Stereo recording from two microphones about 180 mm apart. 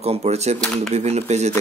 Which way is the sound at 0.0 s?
35° right (ahead or behind).